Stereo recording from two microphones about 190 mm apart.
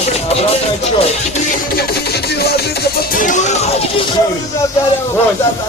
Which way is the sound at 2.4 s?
55° left (ahead or behind).